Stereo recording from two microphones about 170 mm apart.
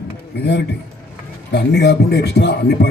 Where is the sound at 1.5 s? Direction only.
80° left.